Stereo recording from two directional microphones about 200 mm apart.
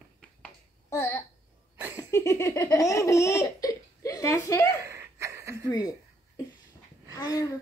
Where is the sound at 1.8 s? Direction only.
10° right (ahead or behind).